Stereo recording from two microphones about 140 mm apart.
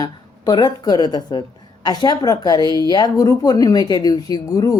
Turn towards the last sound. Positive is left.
turn(degrees=25)  # may be behind; listen again after turning